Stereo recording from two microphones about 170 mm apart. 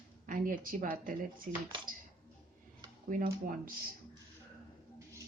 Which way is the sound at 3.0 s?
55° right (ahead or behind).